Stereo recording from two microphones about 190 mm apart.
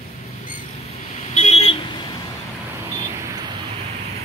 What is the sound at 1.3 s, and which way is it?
Vehicle, 35° left (ahead or behind).